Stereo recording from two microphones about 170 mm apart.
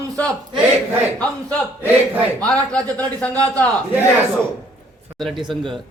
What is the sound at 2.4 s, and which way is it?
A man's voice, 5° left (ahead or behind).